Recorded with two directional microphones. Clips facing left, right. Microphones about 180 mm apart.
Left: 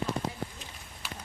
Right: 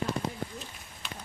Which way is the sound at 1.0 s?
5° left (ahead or behind).